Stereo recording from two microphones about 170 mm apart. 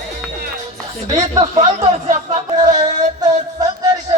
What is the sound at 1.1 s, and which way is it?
Speech, 30° right (ahead or behind).